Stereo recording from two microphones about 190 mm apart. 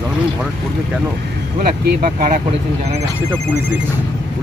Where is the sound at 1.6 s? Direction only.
45° right (ahead or behind).